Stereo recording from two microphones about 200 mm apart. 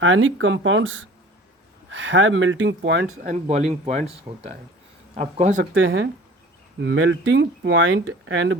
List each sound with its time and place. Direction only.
0.0 s speech: 70° right (ahead or behind)
3.2 s speech: 35° right (ahead or behind)
5.7 s speech: 70° right (ahead or behind)